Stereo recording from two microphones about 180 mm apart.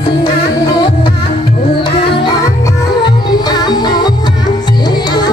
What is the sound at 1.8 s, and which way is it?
Music, 25° left (ahead or behind).